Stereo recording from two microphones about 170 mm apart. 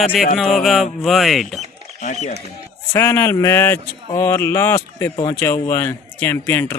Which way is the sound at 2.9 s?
15° left (ahead or behind).